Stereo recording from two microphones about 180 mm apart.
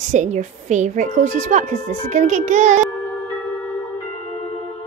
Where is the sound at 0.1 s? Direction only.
40° right (ahead or behind).